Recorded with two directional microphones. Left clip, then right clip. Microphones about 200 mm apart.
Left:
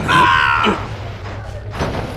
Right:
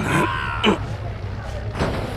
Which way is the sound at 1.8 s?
15° left (ahead or behind).